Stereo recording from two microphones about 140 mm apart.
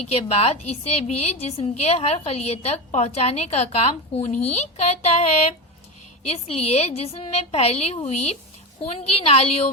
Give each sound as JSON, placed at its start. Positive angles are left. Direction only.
{"t": 0.1, "sound": "a woman's voice", "side_deg": 45}